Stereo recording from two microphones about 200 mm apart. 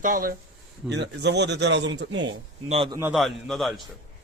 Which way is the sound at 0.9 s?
60° right (ahead or behind).